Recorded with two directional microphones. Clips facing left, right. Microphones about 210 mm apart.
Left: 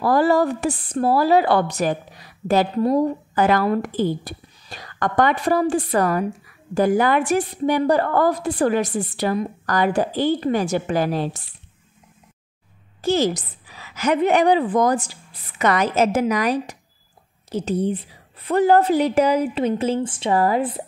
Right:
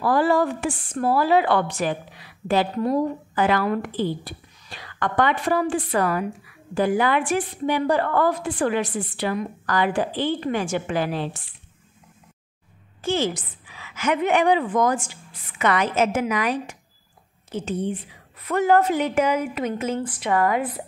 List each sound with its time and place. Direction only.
0.0 s speech: 40° left (ahead or behind)
13.0 s speech: 40° left (ahead or behind)